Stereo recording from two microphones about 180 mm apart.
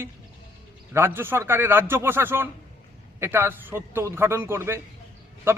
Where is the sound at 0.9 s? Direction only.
15° right (ahead or behind).